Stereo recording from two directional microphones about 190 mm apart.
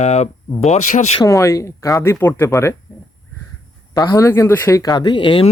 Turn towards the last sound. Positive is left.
turn(degrees=25)  # may be behind; listen again after turning